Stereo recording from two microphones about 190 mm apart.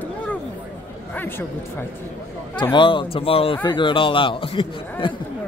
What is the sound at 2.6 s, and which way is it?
A man's voice, 25° left (ahead or behind).